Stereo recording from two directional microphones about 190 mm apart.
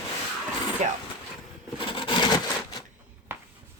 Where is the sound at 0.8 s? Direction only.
35° right (ahead or behind).